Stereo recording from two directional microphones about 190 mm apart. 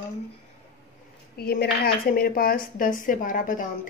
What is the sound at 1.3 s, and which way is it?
Speech, 55° left (ahead or behind).